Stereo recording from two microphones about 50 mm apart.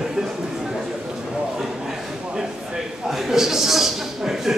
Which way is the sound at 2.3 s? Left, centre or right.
Centre.